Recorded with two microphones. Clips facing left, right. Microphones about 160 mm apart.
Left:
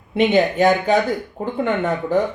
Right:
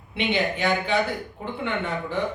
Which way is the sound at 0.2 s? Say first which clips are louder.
Left 9 dB; 45° left (ahead or behind).